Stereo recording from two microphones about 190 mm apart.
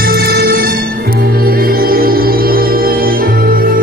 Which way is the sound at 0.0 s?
50° right (ahead or behind).